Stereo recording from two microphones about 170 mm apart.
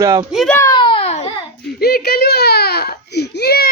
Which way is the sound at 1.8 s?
70° left (ahead or behind).